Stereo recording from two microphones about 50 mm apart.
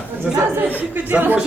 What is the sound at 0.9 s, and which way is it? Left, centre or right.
Speech, right.